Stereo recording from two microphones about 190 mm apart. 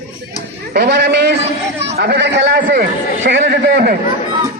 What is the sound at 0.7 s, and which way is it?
Speech, 60° right (ahead or behind).